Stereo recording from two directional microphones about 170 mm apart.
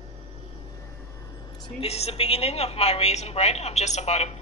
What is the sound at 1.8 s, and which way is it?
A woman's voice, 35° left (ahead or behind).